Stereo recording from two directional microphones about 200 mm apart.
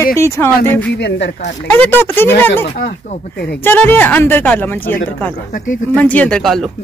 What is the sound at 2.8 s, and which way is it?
Speech, 50° left (ahead or behind).